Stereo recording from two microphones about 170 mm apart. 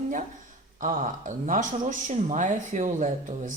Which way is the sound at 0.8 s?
50° right (ahead or behind).